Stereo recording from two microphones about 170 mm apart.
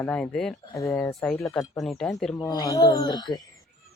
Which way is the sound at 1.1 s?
Centre (ahead or behind).